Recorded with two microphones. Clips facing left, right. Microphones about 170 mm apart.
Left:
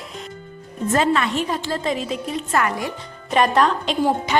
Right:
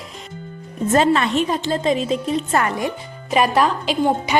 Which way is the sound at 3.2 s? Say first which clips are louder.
Even; 5° right (ahead or behind).